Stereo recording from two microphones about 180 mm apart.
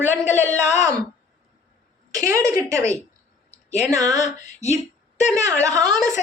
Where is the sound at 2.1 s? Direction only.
20° right (ahead or behind).